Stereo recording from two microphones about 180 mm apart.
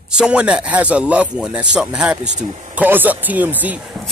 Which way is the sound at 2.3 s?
45° right (ahead or behind).